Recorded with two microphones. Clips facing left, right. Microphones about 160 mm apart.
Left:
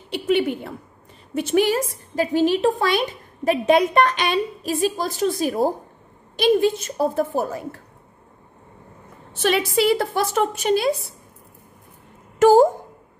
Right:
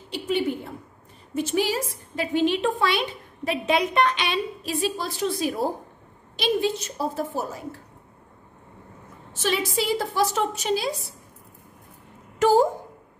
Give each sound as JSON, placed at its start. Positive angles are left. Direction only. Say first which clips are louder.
{"t": 0.1, "sound": "a sound", "louder": "left 5 dB", "side_deg": 70}
{"t": 1.3, "sound": "a woman's voice", "louder": "left 5 dB", "side_deg": 65}
{"t": 9.3, "sound": "a woman's voice", "louder": "left 5 dB", "side_deg": 60}
{"t": 12.4, "sound": "speech", "louder": "left 6 dB", "side_deg": 45}